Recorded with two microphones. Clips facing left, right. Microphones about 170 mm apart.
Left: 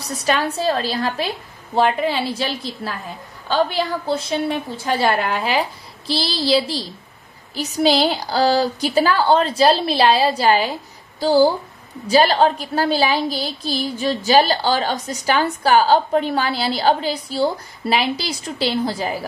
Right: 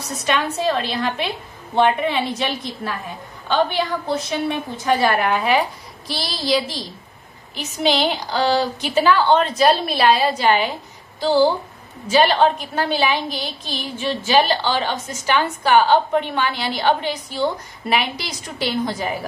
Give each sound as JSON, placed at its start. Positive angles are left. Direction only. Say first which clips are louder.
{"t": 0.0, "sound": "a woman's voice", "louder": "left 1 dB", "side_deg": 35}